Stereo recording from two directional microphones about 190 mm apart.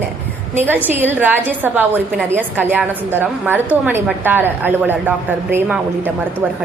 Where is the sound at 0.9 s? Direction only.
10° right (ahead or behind).